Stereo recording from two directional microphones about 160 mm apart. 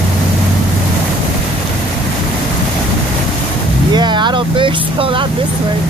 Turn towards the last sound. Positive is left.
turn(degrees=-30)  # may be behind; listen again after turning